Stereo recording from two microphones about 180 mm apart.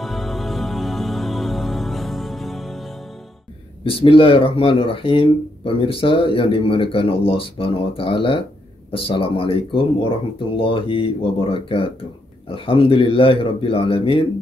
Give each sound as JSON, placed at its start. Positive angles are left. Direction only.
{"t": 0.0, "sound": "music", "side_deg": 0}
{"t": 3.8, "sound": "speech", "side_deg": 30}